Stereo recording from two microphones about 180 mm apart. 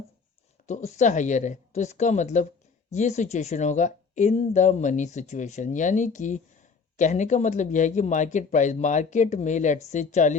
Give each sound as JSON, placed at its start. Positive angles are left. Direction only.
{"t": 0.7, "sound": "speech", "side_deg": 40}